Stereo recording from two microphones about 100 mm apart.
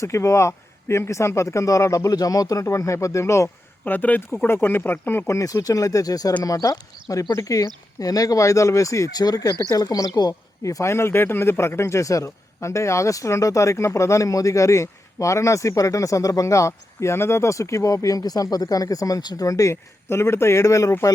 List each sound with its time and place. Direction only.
0.0 s speech: 30° left (ahead or behind)
3.8 s speech: 15° left (ahead or behind)
5.3 s speech: 30° left (ahead or behind)